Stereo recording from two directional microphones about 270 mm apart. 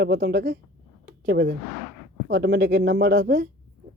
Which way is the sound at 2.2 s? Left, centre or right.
Right.